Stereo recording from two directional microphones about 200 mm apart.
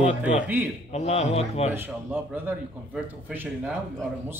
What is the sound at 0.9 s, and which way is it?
Speech, 30° left (ahead or behind).